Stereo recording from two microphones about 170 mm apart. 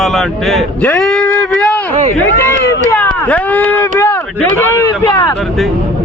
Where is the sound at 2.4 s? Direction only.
20° left (ahead or behind).